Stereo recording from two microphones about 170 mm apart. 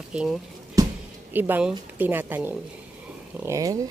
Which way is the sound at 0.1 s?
5° right (ahead or behind).